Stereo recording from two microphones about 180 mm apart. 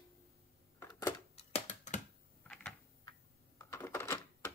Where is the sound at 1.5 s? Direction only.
40° left (ahead or behind).